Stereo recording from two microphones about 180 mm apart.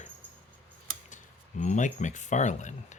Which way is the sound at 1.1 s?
45° left (ahead or behind).